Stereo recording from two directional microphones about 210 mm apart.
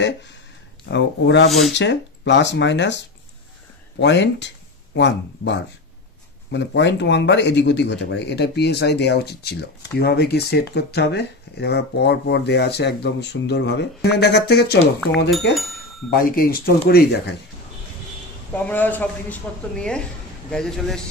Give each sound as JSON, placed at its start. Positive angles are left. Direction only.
{"t": 0.8, "sound": "speech", "side_deg": 55}
{"t": 4.0, "sound": "speech", "side_deg": 55}
{"t": 18.5, "sound": "a man's voice", "side_deg": 10}